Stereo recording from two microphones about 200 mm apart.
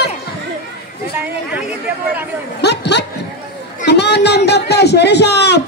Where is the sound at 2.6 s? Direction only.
55° left (ahead or behind).